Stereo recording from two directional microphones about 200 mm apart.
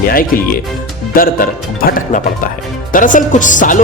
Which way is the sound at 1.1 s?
45° left (ahead or behind).